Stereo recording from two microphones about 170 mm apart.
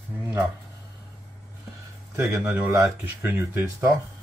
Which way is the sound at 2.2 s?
15° right (ahead or behind).